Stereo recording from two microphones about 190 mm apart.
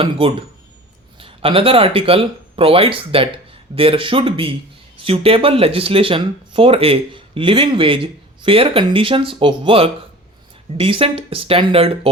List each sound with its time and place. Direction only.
0.0 s speech: 30° right (ahead or behind)